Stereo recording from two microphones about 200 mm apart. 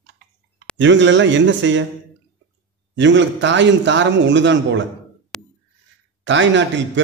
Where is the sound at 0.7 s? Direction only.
65° right (ahead or behind).